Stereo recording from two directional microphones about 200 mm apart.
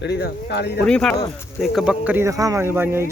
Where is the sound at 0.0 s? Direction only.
55° left (ahead or behind).